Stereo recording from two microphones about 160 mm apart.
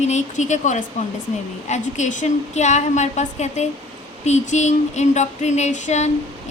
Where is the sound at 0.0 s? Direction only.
45° left (ahead or behind).